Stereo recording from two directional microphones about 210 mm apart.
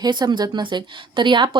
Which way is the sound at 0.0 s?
20° right (ahead or behind).